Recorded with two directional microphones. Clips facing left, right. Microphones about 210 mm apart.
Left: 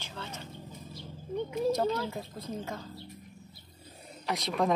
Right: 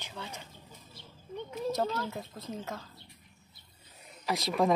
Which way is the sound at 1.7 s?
Centre (ahead or behind).